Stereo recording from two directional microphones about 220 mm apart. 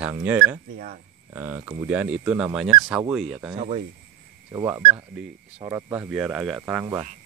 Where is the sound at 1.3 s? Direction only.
10° right (ahead or behind).